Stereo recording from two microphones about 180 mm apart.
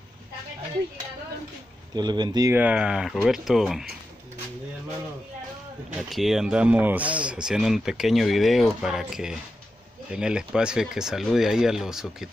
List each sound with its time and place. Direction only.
2.0 s speech: 25° right (ahead or behind)
2.5 s speech: 5° right (ahead or behind)
5.9 s speech: centre (ahead or behind)